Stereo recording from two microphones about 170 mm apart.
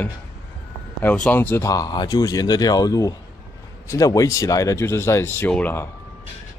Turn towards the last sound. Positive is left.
turn(degrees=10)  # may be behind; listen again after turning